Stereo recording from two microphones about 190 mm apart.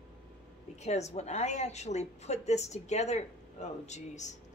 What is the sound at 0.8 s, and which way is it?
A woman's voice, 35° left (ahead or behind).